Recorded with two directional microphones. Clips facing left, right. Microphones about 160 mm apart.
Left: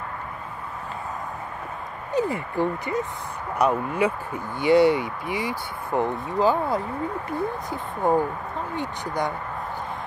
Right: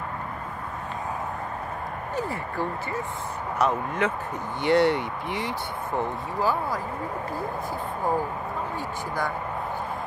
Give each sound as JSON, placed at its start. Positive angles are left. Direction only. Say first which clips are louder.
{"t": 2.1, "sound": "speech", "louder": "left 6 dB", "side_deg": 15}
{"t": 5.9, "sound": "speech", "louder": "left 5 dB", "side_deg": 20}